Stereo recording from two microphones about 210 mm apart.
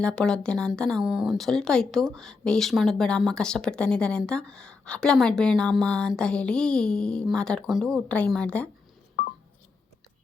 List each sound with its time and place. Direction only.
0.0 s speech: 5° left (ahead or behind)
9.2 s telephone dialing: 40° left (ahead or behind)